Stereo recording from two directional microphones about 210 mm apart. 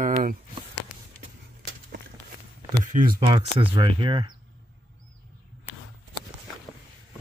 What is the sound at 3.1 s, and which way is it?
Speech, 20° right (ahead or behind).